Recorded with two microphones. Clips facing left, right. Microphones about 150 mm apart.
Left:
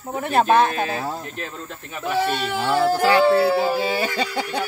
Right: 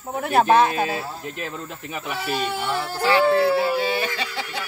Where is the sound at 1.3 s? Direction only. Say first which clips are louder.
Right 1 dB; 15° right (ahead or behind).